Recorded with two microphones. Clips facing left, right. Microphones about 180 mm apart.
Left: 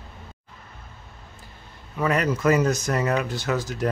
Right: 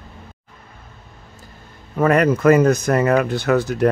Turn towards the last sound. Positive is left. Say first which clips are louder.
# right 8 dB
turn(degrees=-60)  # may be behind; listen again after turning